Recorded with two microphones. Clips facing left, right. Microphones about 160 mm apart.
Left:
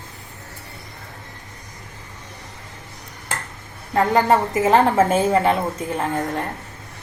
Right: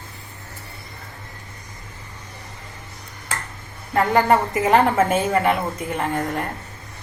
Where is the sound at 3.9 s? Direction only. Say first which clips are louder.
Even; 25° left (ahead or behind).